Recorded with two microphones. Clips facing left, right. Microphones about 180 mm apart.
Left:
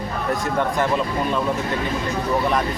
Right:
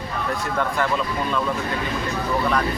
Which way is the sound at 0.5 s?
20° left (ahead or behind).